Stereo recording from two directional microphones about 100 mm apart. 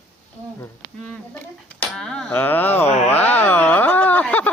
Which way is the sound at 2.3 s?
20° left (ahead or behind).